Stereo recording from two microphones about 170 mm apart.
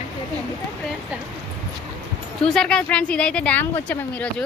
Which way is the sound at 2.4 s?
5° left (ahead or behind).